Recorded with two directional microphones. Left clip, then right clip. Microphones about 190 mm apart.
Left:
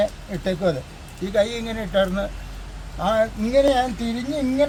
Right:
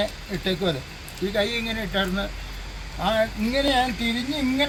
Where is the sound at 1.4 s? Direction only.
20° left (ahead or behind).